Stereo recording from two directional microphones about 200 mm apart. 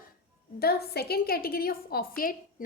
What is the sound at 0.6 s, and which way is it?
A woman's voice, 50° left (ahead or behind).